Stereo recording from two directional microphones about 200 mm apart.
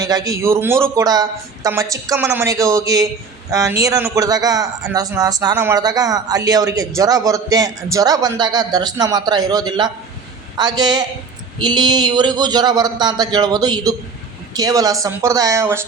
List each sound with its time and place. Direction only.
0.0 s a man's voice: 20° right (ahead or behind)